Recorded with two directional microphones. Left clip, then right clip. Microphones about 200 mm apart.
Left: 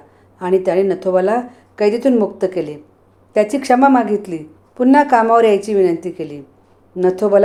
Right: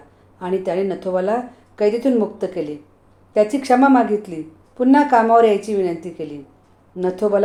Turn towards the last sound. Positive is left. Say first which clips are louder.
# left 5 dB
turn(degrees=25)  # may be behind; listen again after turning